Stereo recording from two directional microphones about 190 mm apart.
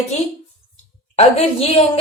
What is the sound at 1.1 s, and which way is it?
Speech, 35° left (ahead or behind).